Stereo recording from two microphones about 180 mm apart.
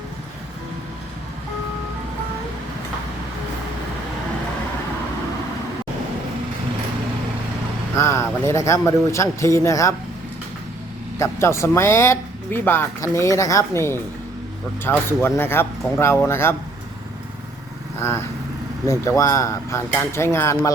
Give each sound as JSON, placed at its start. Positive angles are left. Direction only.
{"t": 7.9, "sound": "speech", "side_deg": 15}
{"t": 11.2, "sound": "speech", "side_deg": 15}
{"t": 18.0, "sound": "speech", "side_deg": 15}